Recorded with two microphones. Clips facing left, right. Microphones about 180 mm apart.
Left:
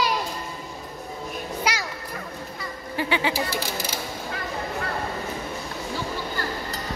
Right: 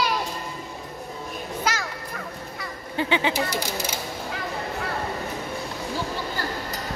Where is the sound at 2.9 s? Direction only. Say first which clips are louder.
Right 1 dB; 20° right (ahead or behind).